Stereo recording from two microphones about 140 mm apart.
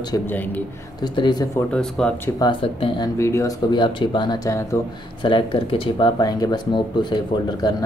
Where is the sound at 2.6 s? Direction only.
40° left (ahead or behind).